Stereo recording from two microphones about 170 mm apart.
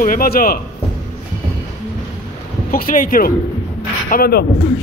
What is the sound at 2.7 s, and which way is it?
Speech, 55° left (ahead or behind).